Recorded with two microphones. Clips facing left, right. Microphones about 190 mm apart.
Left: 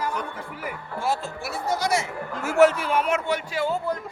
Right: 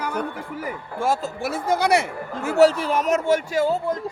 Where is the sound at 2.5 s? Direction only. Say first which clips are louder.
Right 2 dB; 35° right (ahead or behind).